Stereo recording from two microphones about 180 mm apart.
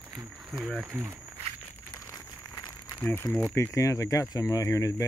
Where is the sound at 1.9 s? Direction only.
20° left (ahead or behind).